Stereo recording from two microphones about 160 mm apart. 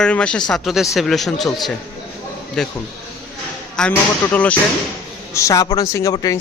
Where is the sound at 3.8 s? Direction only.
10° left (ahead or behind).